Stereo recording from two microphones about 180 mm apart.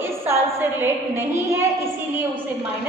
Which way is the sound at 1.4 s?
15° right (ahead or behind).